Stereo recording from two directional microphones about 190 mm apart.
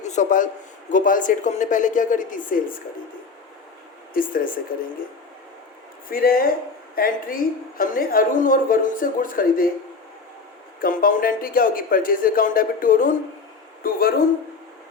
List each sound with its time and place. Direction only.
0.0 s a man's voice: 40° left (ahead or behind)
4.1 s a woman's voice: 45° left (ahead or behind)
6.1 s a woman's voice: 50° left (ahead or behind)
10.8 s a woman's voice: 50° left (ahead or behind)